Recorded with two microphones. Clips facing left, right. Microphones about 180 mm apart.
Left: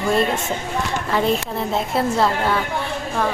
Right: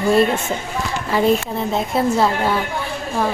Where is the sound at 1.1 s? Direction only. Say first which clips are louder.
Right 4 dB; centre (ahead or behind).